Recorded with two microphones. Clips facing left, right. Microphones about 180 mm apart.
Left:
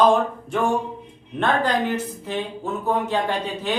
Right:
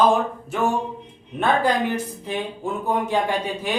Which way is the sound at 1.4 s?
10° right (ahead or behind).